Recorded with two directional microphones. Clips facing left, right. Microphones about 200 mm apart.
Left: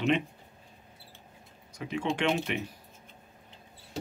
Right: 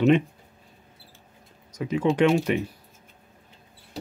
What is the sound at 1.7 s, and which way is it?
Speech, 40° right (ahead or behind).